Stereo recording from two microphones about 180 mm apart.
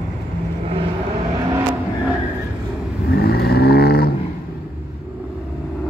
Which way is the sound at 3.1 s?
60° left (ahead or behind).